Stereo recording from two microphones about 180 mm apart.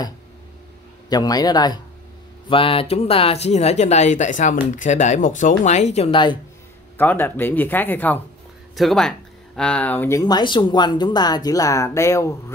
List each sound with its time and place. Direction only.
1.0 s speech: 20° left (ahead or behind); by 6.0 s 40° left (ahead or behind)
7.0 s speech: 10° left (ahead or behind)